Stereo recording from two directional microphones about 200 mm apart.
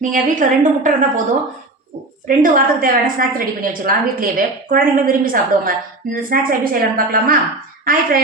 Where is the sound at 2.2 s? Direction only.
45° right (ahead or behind).